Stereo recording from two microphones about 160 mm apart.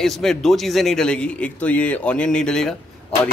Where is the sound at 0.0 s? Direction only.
5° left (ahead or behind).